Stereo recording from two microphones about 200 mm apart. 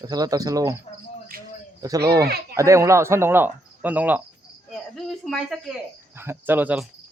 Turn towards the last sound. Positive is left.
turn(degrees=-10)  # may be behind; listen again after turning